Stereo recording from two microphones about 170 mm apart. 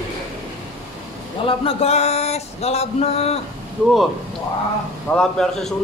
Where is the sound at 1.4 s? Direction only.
35° left (ahead or behind).